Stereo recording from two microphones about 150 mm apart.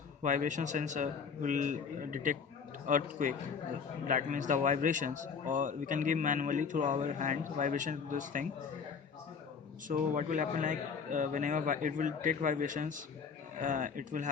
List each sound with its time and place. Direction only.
0.2 s speech: 60° right (ahead or behind)
9.9 s speech: 60° right (ahead or behind)